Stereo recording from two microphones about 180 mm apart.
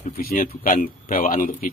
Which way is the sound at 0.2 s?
50° left (ahead or behind).